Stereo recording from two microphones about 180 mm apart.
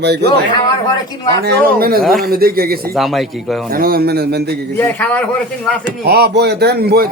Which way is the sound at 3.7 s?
55° right (ahead or behind).